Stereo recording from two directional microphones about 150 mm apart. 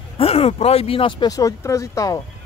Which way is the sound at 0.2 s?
40° left (ahead or behind).